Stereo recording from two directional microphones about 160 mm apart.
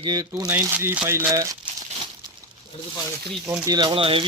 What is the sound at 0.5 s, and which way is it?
Speech, 15° right (ahead or behind).